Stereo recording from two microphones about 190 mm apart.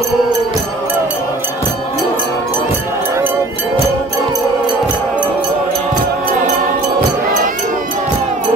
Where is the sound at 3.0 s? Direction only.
10° right (ahead or behind).